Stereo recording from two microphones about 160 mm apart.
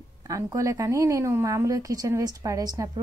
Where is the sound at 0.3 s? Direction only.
20° right (ahead or behind).